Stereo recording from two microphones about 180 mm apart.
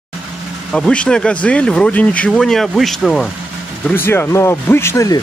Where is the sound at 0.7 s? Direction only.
5° left (ahead or behind).